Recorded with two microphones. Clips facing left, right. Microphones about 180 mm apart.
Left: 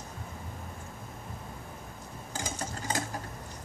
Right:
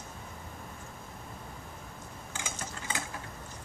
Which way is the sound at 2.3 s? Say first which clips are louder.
Left 5 dB; 40° left (ahead or behind).